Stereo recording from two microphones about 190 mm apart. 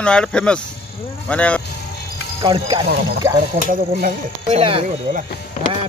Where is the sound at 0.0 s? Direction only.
5° left (ahead or behind).